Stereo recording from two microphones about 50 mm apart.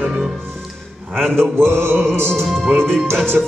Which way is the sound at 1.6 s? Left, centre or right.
Right.